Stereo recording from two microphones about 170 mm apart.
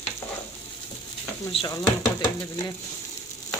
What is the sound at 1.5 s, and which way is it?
Speech, 30° left (ahead or behind).